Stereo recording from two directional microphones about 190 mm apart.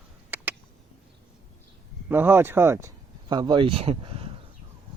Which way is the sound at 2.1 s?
10° right (ahead or behind).